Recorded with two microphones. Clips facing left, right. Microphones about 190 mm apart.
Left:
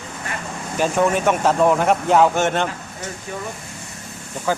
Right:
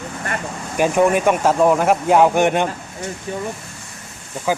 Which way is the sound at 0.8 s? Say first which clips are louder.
Right 3 dB; 15° right (ahead or behind).